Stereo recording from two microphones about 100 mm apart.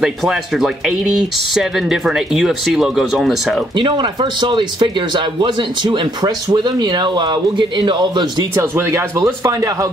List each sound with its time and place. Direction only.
0.0 s speech: centre (ahead or behind)
3.7 s speech: 50° right (ahead or behind)
8.5 s speech: 25° right (ahead or behind)